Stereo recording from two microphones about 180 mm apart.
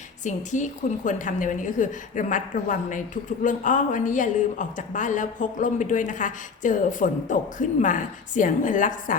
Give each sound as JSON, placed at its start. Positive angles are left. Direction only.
{"t": 0.3, "sound": "a woman's voice", "side_deg": 45}